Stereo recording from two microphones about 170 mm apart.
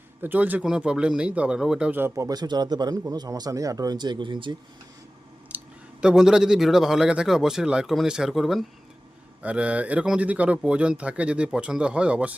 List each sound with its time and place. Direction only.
0.2 s speech: 10° right (ahead or behind); by 4.5 s 30° right (ahead or behind)
5.5 s clicking: 10° right (ahead or behind)
6.0 s a man's voice: 5° right (ahead or behind)